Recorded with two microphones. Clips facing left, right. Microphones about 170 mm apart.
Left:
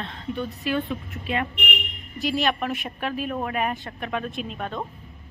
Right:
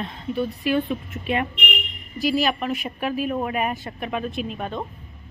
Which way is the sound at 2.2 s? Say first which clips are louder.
Right 2 dB; 5° right (ahead or behind).